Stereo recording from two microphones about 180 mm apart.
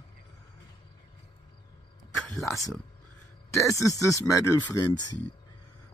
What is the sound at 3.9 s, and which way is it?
Speech, 20° left (ahead or behind).